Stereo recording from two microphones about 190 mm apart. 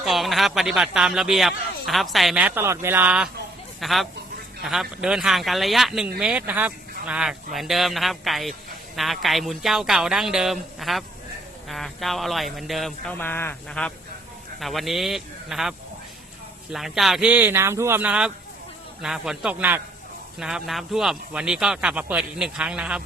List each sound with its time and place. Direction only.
0.0 s speech: centre (ahead or behind)
13.1 s speech: 10° left (ahead or behind)
16.7 s speech: centre (ahead or behind)